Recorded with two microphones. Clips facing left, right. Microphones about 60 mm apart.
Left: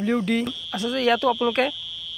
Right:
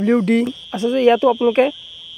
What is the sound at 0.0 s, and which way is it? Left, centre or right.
Speech, right.